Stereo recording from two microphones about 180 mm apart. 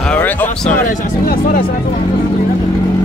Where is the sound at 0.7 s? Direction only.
45° left (ahead or behind).